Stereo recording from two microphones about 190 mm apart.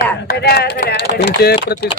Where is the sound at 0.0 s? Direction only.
55° left (ahead or behind).